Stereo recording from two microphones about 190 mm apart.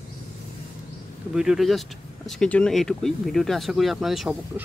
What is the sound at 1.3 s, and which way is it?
Speech, 5° right (ahead or behind).